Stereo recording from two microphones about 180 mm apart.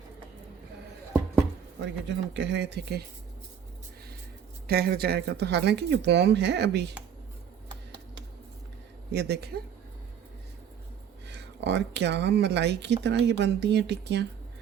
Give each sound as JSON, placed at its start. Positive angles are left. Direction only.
{"t": 1.8, "sound": "speech", "side_deg": -80}
{"t": 4.6, "sound": "speech", "side_deg": -60}
{"t": 9.1, "sound": "speech", "side_deg": -65}
{"t": 11.3, "sound": "speech", "side_deg": -70}